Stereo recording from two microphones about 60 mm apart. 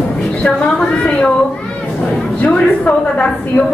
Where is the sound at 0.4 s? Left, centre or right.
Centre.